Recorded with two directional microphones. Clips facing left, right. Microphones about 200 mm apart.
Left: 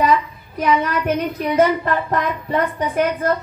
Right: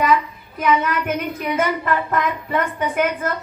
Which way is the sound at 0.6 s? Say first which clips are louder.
Left 1 dB; 35° left (ahead or behind).